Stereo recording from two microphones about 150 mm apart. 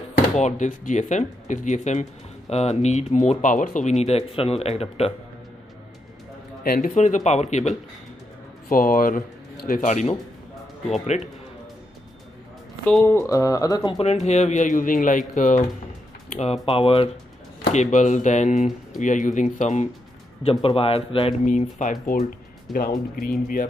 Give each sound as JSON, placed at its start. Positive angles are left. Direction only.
{"t": 0.4, "sound": "speech", "side_deg": 55}
{"t": 4.0, "sound": "speech", "side_deg": 40}
{"t": 6.6, "sound": "speech", "side_deg": 70}
{"t": 8.6, "sound": "speech", "side_deg": 70}
{"t": 12.8, "sound": "speech", "side_deg": 15}
{"t": 13.9, "sound": "speech", "side_deg": 50}
{"t": 16.3, "sound": "music", "side_deg": 50}
{"t": 16.6, "sound": "speech", "side_deg": 40}
{"t": 17.7, "sound": "speech", "side_deg": 55}
{"t": 20.6, "sound": "speech", "side_deg": 40}
{"t": 21.5, "sound": "speech", "side_deg": 55}
{"t": 22.7, "sound": "speech", "side_deg": 75}